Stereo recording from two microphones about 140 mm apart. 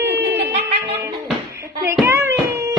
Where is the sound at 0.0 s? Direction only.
15° right (ahead or behind).